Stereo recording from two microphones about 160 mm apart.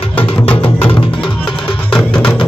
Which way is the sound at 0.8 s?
35° left (ahead or behind).